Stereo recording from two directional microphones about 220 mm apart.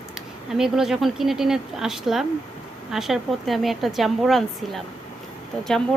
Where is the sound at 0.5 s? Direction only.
Centre (ahead or behind).